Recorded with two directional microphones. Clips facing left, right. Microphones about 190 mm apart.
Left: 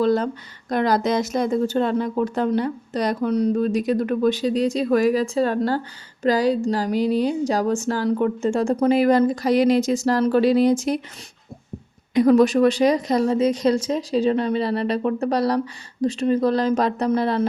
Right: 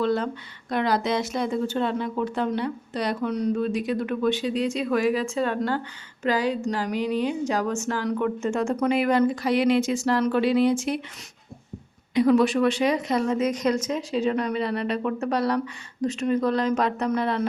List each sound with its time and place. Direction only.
0.0 s speech: 40° left (ahead or behind)
12.1 s speech: 40° left (ahead or behind)